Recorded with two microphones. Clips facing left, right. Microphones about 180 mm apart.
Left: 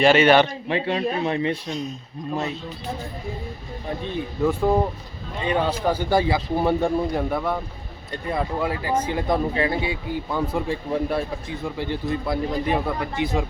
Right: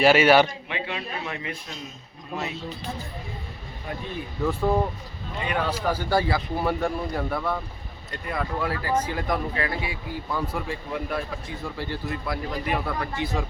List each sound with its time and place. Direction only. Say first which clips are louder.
0.0 s a man's voice: left 2 dB; 5° right (ahead or behind)
0.7 s a man's voice: left 9 dB; 35° left (ahead or behind)
4.4 s speech: left 3 dB; 15° left (ahead or behind)
11.6 s speech: left 5 dB; 20° left (ahead or behind)